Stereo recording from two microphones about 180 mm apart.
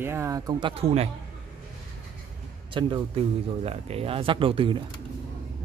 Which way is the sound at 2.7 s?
25° right (ahead or behind).